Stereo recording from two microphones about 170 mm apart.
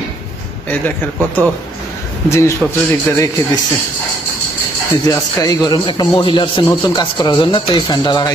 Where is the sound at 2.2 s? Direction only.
15° left (ahead or behind).